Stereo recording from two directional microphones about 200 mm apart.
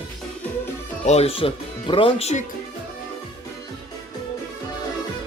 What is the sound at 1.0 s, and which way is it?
Speech, 30° left (ahead or behind).